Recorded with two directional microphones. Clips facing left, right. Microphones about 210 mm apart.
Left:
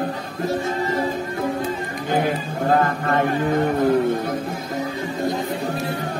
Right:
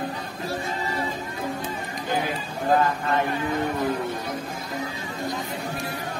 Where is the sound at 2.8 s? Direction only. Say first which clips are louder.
Left 3 dB; 55° left (ahead or behind).